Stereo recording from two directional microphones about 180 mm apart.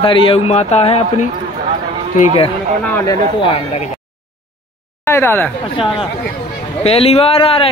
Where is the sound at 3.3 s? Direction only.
30° left (ahead or behind).